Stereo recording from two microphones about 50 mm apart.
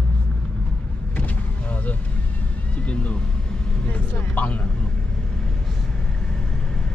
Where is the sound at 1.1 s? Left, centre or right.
Left.